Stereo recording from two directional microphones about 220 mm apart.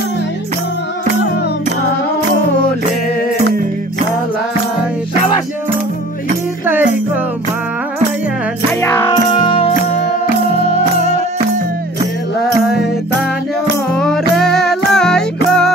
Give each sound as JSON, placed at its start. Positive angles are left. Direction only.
{"t": 6.6, "sound": "music", "side_deg": -10}
{"t": 8.8, "sound": "music", "side_deg": 10}
{"t": 9.3, "sound": "music", "side_deg": 25}
{"t": 11.0, "sound": "music", "side_deg": -30}
{"t": 13.9, "sound": "music", "side_deg": 5}